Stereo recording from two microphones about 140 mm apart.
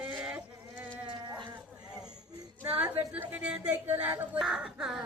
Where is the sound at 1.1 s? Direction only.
35° right (ahead or behind).